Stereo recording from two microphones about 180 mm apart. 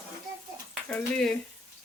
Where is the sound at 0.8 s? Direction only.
5° left (ahead or behind).